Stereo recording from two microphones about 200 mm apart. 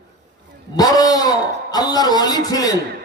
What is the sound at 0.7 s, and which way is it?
A man's voice, 20° left (ahead or behind).